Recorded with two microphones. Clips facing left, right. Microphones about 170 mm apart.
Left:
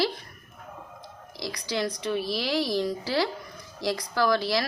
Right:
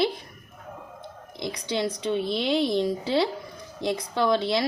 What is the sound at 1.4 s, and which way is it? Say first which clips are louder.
Speech: right 2 dB; 25° right (ahead or behind).